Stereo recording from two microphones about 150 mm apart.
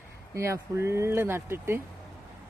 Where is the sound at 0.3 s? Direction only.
20° right (ahead or behind).